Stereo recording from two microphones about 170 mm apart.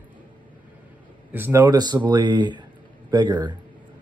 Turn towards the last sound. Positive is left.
turn(degrees=-25)  # may be behind; listen again after turning